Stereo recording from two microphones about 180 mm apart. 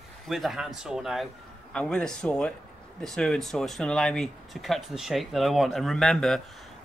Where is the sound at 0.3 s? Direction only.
Centre (ahead or behind).